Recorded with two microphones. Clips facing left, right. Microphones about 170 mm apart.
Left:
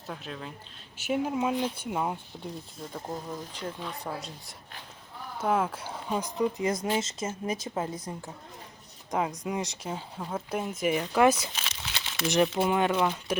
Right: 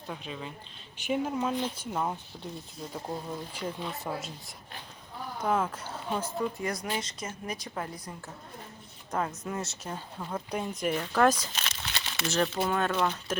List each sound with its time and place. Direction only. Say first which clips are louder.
0.1 s speech: even; centre (ahead or behind)
2.9 s speech: even; 5° right (ahead or behind)
5.4 s a woman's voice: left 2 dB; 10° left (ahead or behind)
12.3 s speech: left 4 dB; 15° left (ahead or behind)